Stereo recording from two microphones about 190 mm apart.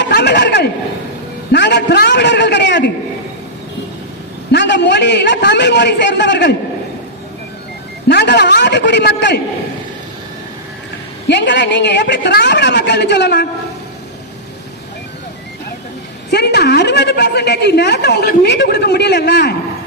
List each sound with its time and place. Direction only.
0.0 s a man's voice: 65° left (ahead or behind)
4.5 s a man's voice: 65° left (ahead or behind)
8.0 s a woman's voice: 60° left (ahead or behind)
11.3 s a woman's voice: 65° left (ahead or behind)
16.3 s a woman's voice: 60° left (ahead or behind)